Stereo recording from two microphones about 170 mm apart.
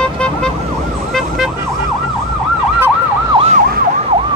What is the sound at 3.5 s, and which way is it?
Emergency vehicle, 45° right (ahead or behind).